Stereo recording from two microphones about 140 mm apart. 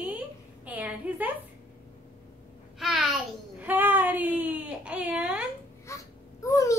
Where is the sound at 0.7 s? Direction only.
10° right (ahead or behind).